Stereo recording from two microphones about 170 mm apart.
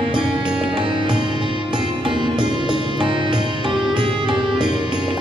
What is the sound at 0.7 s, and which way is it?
Music, 30° right (ahead or behind).